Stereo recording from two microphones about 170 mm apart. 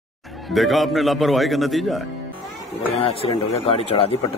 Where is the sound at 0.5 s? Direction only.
Centre (ahead or behind).